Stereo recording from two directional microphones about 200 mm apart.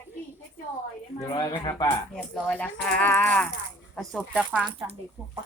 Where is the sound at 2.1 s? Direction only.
5° left (ahead or behind).